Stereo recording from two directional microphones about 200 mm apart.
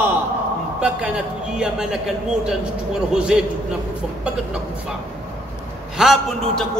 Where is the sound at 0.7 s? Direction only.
5° right (ahead or behind).